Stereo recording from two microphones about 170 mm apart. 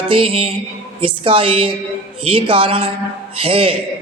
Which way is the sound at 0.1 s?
35° right (ahead or behind).